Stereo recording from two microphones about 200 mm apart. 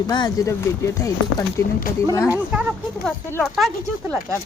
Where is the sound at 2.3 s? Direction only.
5° right (ahead or behind).